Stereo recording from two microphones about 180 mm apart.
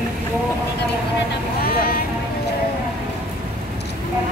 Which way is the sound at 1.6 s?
55° left (ahead or behind).